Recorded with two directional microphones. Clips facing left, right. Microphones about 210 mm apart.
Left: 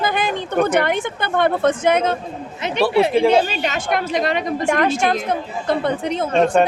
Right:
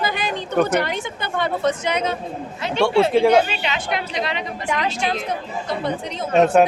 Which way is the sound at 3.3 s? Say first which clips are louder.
Even; 40° left (ahead or behind).